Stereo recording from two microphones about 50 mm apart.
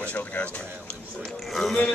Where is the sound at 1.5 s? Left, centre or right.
Centre.